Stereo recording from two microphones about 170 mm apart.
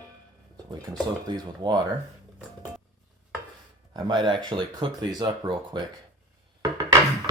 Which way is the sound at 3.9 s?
25° right (ahead or behind).